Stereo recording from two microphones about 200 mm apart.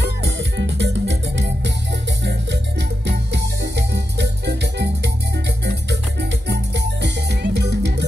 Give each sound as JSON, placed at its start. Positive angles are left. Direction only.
{"t": 0.4, "sound": "music", "side_deg": -60}
{"t": 3.1, "sound": "music", "side_deg": -55}
{"t": 6.4, "sound": "music", "side_deg": -60}